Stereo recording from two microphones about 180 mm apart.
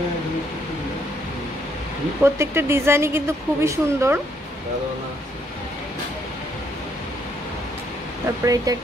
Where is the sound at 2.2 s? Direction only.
15° right (ahead or behind).